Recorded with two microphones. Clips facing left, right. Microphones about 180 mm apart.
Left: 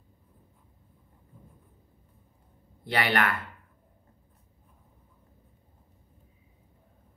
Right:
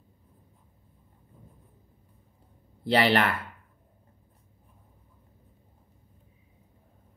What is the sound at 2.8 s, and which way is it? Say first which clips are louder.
Speech: right 4 dB; 30° right (ahead or behind).